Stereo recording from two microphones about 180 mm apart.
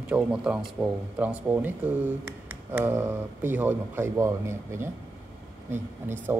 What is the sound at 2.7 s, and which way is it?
Speech, 10° right (ahead or behind).